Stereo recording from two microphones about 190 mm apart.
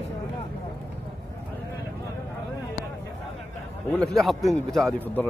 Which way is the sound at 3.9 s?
5° left (ahead or behind).